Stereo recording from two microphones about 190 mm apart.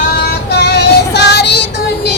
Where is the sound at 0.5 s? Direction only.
60° left (ahead or behind).